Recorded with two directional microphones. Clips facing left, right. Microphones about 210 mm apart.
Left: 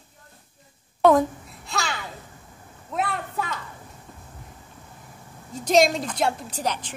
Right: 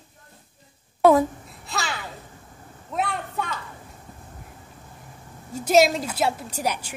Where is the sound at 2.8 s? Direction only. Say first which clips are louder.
Even; centre (ahead or behind).